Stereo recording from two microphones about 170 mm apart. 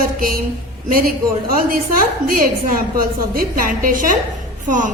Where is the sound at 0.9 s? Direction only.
60° right (ahead or behind).